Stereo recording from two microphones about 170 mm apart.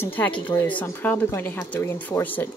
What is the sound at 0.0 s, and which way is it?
Speech, 10° left (ahead or behind).